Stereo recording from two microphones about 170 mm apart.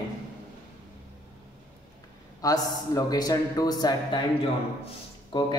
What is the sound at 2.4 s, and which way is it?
Speech, 20° left (ahead or behind).